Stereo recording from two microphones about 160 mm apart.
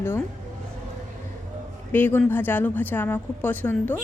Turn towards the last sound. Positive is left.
turn(degrees=10)  # may be behind; listen again after turning